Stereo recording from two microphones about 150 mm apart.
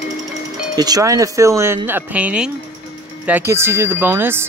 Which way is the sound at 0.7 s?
25° right (ahead or behind).